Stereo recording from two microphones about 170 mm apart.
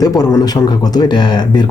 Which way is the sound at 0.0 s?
20° left (ahead or behind).